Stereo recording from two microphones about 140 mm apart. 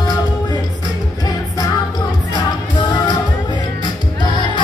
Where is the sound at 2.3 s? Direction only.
30° left (ahead or behind).